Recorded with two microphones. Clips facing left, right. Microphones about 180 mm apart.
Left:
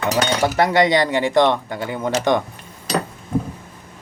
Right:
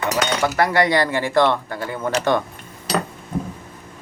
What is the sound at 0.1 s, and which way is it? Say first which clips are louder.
Speech: left 3 dB; 20° left (ahead or behind).